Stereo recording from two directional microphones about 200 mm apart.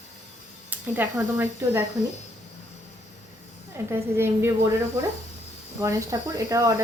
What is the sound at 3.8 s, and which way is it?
Speech, 15° right (ahead or behind).